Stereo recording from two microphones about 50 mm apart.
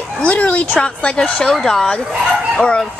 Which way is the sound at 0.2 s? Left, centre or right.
Left.